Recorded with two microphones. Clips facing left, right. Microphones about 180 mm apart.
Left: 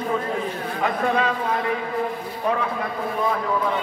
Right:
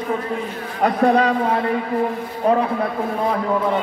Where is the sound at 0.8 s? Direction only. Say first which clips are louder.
Right 7 dB; 40° right (ahead or behind).